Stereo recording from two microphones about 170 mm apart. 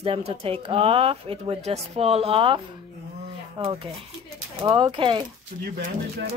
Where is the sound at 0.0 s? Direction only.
35° right (ahead or behind).